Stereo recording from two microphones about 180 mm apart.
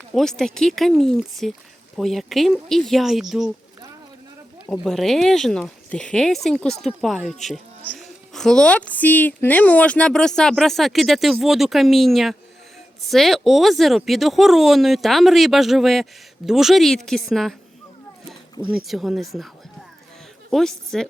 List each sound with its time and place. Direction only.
0.1 s a woman's voice: centre (ahead or behind)
4.7 s a woman's voice: centre (ahead or behind)
18.7 s a woman's voice: centre (ahead or behind)
20.5 s a woman's voice: 5° left (ahead or behind)